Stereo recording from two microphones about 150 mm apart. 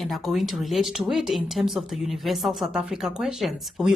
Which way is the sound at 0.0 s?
Centre (ahead or behind).